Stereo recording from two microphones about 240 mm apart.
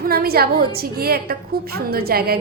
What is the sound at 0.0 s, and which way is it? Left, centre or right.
A woman's voice, right.